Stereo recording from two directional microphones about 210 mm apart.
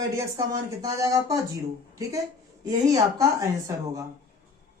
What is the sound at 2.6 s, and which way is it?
Speech, 15° right (ahead or behind).